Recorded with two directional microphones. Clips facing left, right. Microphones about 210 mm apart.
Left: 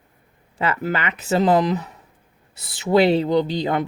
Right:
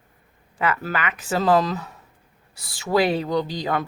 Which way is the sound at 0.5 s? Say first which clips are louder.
Left 2 dB; 25° left (ahead or behind).